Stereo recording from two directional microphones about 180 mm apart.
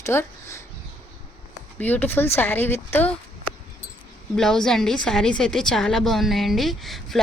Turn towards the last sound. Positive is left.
turn(degrees=0)  # may be behind; listen again after turning